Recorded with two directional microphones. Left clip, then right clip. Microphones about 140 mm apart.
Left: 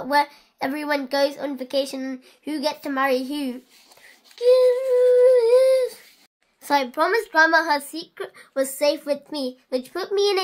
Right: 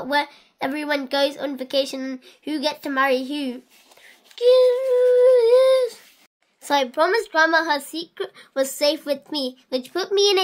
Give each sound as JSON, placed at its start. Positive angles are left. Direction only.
{"t": 0.0, "sound": "a woman's voice", "side_deg": -10}
{"t": 4.9, "sound": "humming", "side_deg": -10}
{"t": 6.6, "sound": "a woman's voice", "side_deg": -10}
{"t": 8.5, "sound": "a woman's voice", "side_deg": -25}